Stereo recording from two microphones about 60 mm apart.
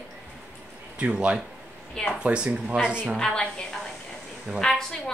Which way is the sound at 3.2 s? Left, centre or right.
Centre.